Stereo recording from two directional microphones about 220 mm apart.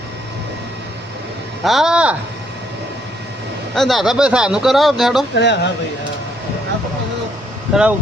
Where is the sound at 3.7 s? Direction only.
Centre (ahead or behind).